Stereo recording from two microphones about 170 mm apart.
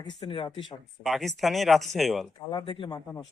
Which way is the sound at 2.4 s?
25° left (ahead or behind).